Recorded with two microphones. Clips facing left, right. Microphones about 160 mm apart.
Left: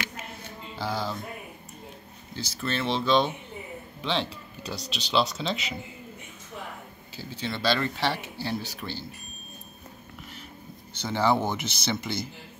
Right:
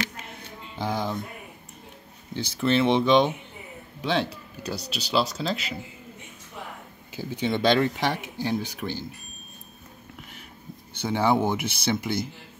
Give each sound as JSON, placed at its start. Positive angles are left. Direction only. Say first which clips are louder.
{"t": 0.7, "sound": "speech", "louder": "right 3 dB", "side_deg": -15}
{"t": 2.3, "sound": "speech", "louder": "right 8 dB", "side_deg": -15}
{"t": 7.2, "sound": "speech", "louder": "right 7 dB", "side_deg": -15}
{"t": 11.0, "sound": "speech", "louder": "right 2 dB", "side_deg": -15}